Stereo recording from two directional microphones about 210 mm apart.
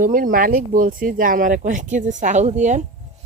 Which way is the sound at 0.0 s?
40° right (ahead or behind).